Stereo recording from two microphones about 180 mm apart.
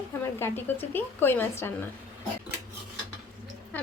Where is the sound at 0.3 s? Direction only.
15° left (ahead or behind).